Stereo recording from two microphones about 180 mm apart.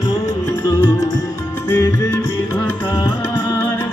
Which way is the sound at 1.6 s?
10° left (ahead or behind).